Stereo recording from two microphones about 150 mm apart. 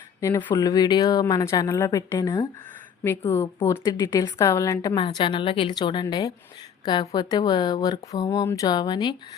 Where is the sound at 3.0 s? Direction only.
15° left (ahead or behind).